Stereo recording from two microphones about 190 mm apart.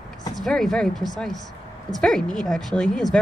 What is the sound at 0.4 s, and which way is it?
A woman's voice, centre (ahead or behind).